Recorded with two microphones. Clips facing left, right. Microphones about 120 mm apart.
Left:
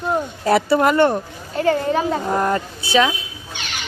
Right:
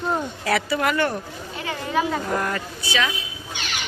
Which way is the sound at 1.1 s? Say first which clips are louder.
Left 6 dB; 45° left (ahead or behind).